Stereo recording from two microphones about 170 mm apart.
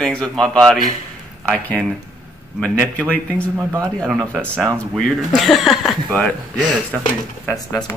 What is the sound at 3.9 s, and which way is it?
Speech, 5° left (ahead or behind).